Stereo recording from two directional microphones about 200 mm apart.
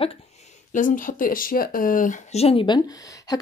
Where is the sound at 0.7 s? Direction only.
40° left (ahead or behind).